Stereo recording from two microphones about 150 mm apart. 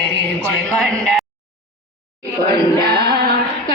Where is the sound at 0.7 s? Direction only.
5° left (ahead or behind).